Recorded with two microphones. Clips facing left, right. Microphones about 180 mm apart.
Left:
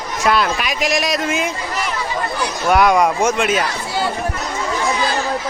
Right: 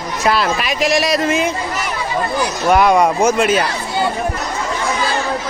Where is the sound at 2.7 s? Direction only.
Centre (ahead or behind).